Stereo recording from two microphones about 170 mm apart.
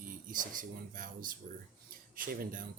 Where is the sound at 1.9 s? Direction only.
55° right (ahead or behind).